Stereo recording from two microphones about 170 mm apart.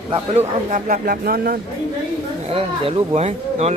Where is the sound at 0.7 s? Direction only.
55° right (ahead or behind).